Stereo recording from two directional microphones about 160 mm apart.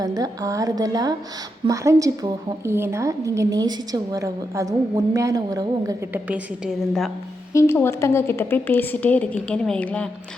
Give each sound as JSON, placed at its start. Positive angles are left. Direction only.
{"t": 0.0, "sound": "a woman's voice", "side_deg": -20}
{"t": 6.1, "sound": "a woman's voice", "side_deg": -10}
{"t": 7.5, "sound": "a woman's voice", "side_deg": 15}